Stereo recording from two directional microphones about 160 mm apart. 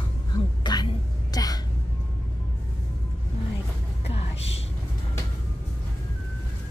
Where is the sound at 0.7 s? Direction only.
25° left (ahead or behind).